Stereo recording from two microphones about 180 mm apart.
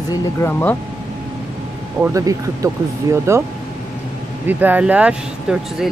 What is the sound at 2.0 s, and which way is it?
Speech, 20° right (ahead or behind).